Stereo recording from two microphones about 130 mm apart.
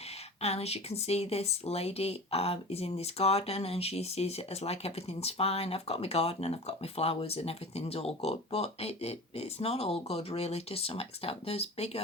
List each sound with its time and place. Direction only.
0.4 s speech: 55° left (ahead or behind)